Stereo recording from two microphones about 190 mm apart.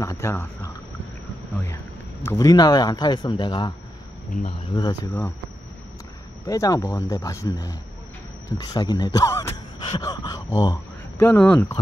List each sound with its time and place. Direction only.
0.0 s speech: 15° left (ahead or behind)
2.2 s speech: 20° left (ahead or behind)
4.7 s speech: 20° left (ahead or behind)
6.4 s speech: 15° left (ahead or behind)